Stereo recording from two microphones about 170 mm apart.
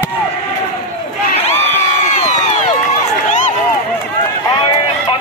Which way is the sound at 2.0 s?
40° left (ahead or behind).